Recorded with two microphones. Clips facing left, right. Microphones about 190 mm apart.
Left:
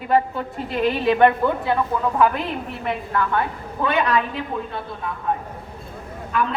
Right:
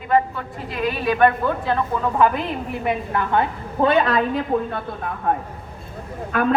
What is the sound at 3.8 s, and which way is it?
Speech, 35° right (ahead or behind).